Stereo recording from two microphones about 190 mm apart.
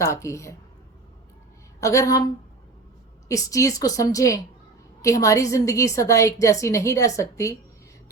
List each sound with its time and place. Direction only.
0.0 s a woman's voice: 15° left (ahead or behind)
1.8 s a woman's voice: 15° left (ahead or behind)